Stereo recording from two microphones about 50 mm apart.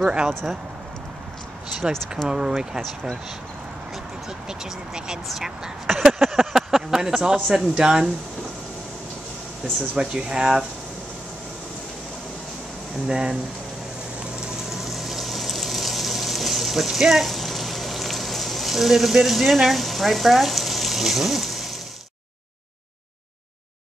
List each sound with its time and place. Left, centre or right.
0.0 s speech: centre
1.8 s speech: centre
4.5 s speech: centre
5.3 s speech: centre
9.8 s speech: centre
13.1 s speech: centre
14.2 s a sound: centre